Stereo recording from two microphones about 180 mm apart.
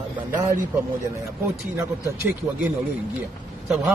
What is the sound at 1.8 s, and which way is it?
Speech, 15° right (ahead or behind).